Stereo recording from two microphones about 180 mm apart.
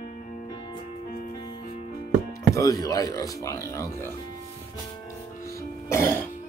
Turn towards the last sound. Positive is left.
turn(degrees=15)  # may be behind; listen again after turning